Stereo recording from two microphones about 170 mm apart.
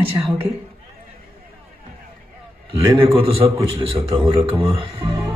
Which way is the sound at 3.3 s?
35° right (ahead or behind).